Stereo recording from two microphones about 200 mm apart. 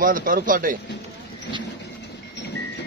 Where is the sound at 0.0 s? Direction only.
45° right (ahead or behind).